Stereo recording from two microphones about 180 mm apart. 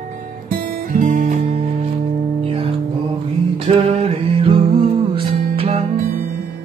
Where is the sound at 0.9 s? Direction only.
45° right (ahead or behind).